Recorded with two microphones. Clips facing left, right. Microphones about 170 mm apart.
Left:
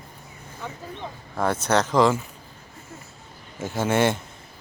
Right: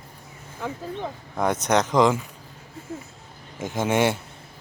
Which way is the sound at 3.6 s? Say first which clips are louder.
Even; 15° right (ahead or behind).